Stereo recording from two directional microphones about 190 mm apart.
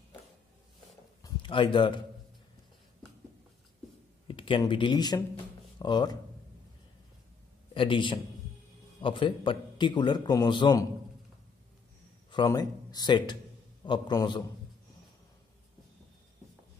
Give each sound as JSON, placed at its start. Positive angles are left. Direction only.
{"t": 1.2, "sound": "a sound", "side_deg": 25}
{"t": 4.3, "sound": "speech", "side_deg": 25}
{"t": 7.7, "sound": "a man's voice", "side_deg": 25}
{"t": 12.3, "sound": "a man's voice", "side_deg": 20}